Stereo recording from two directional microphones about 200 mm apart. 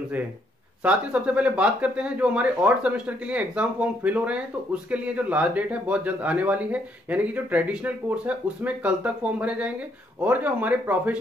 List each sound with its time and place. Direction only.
0.8 s speech: 5° right (ahead or behind)